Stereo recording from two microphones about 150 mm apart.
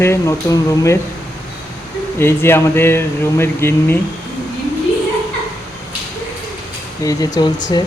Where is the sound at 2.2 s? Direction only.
15° left (ahead or behind).